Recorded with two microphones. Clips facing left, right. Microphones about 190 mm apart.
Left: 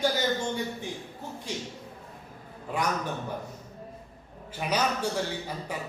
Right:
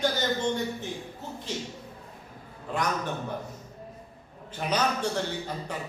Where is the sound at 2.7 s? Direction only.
10° left (ahead or behind).